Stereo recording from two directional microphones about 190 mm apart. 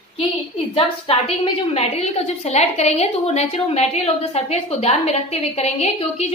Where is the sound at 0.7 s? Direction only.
30° left (ahead or behind).